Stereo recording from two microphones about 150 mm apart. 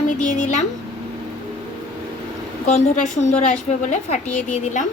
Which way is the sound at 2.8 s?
50° left (ahead or behind).